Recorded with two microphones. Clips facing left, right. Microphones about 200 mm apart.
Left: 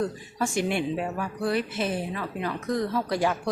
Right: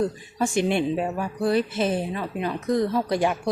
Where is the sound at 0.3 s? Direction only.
20° right (ahead or behind).